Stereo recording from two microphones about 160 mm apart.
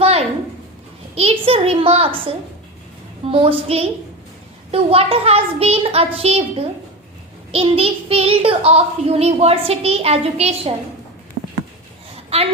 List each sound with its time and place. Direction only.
0.0 s a sound: 40° right (ahead or behind)
1.1 s a child's voice: 40° right (ahead or behind)
12.3 s a woman's voice: 40° right (ahead or behind)